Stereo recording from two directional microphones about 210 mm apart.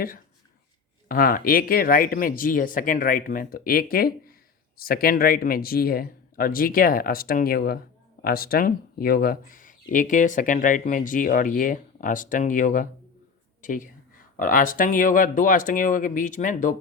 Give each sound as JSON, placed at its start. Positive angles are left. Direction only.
{"t": 1.0, "sound": "speech", "side_deg": 45}